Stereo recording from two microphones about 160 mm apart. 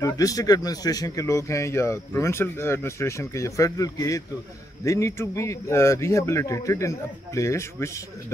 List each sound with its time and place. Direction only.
0.0 s speech: 20° left (ahead or behind)